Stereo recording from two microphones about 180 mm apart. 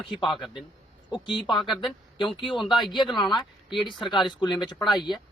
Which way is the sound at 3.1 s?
25° left (ahead or behind).